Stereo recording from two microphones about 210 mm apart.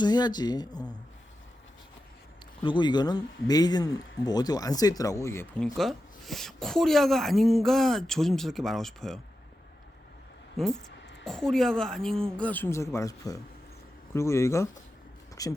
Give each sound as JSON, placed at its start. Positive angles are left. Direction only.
{"t": 0.0, "sound": "a man's voice", "side_deg": 20}
{"t": 2.6, "sound": "a man's voice", "side_deg": 20}
{"t": 5.6, "sound": "speech", "side_deg": 0}
{"t": 10.6, "sound": "speech", "side_deg": 0}